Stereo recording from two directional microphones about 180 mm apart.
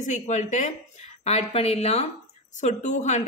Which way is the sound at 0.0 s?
40° left (ahead or behind).